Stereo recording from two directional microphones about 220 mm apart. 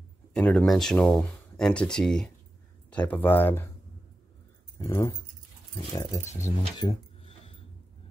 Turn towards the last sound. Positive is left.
turn(degrees=25)  # may be behind; listen again after turning